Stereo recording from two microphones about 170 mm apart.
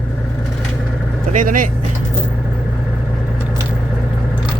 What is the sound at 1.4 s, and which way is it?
Speech, 55° right (ahead or behind).